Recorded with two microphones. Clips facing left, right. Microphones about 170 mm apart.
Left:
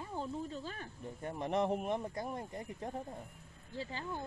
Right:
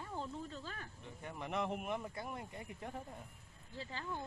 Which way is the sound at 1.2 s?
35° left (ahead or behind).